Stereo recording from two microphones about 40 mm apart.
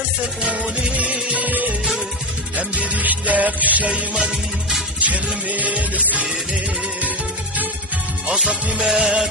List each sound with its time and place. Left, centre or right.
0.6 s music: right
0.9 s music: right
1.5 s music: right
2.6 s music: right
8.9 s music: centre